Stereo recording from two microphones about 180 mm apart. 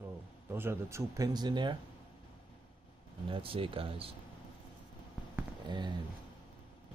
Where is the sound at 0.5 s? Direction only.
15° right (ahead or behind).